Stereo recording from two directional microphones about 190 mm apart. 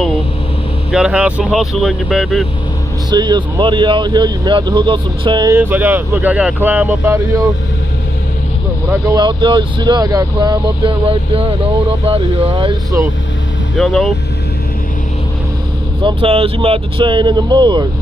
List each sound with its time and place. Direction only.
0.9 s speech: 5° right (ahead or behind)
3.1 s speech: 25° right (ahead or behind)
5.6 s speech: 10° right (ahead or behind)
8.9 s speech: 20° right (ahead or behind)
13.7 s speech: centre (ahead or behind)
16.0 s speech: 25° right (ahead or behind)